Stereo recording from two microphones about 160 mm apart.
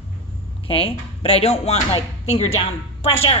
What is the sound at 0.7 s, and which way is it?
A woman's voice, 35° left (ahead or behind).